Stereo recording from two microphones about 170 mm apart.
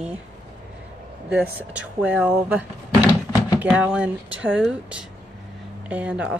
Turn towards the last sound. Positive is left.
turn(degrees=-5)  # may be behind; listen again after turning